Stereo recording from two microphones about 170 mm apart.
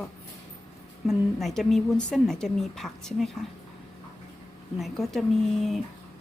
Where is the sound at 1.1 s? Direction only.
Centre (ahead or behind).